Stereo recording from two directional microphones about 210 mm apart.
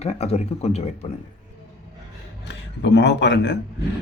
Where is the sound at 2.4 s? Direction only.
55° left (ahead or behind).